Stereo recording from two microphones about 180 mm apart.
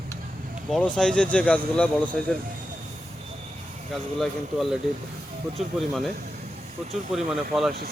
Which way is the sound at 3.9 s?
Centre (ahead or behind).